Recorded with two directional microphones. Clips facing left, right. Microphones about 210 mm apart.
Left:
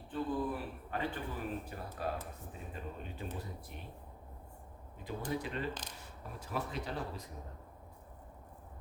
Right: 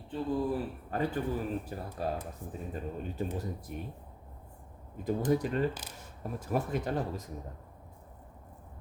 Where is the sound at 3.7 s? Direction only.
45° right (ahead or behind).